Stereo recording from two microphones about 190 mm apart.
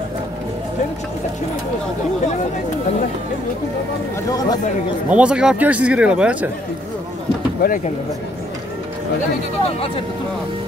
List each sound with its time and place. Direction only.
4.3 s speech: 20° left (ahead or behind)
5.1 s speech: 5° right (ahead or behind)
7.6 s speech: 45° left (ahead or behind)